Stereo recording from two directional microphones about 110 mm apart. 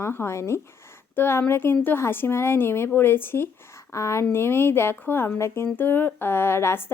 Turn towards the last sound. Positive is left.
turn(degrees=20)  # may be behind; listen again after turning